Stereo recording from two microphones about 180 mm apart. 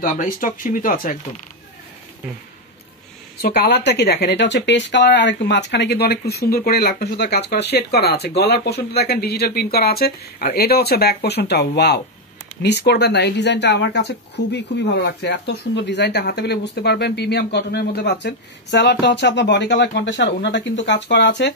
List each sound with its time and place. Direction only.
0.0 s speech: 45° left (ahead or behind)
3.4 s speech: 65° left (ahead or behind)